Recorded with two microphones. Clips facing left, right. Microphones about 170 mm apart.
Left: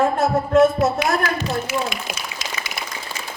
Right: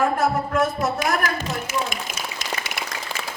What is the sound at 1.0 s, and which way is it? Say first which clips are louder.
Speech: left 2 dB; 45° right (ahead or behind).